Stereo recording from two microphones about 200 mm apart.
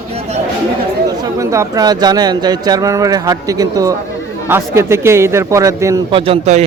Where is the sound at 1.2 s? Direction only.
15° right (ahead or behind).